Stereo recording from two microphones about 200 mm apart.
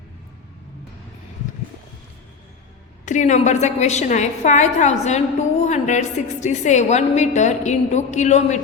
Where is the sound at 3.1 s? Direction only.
35° left (ahead or behind).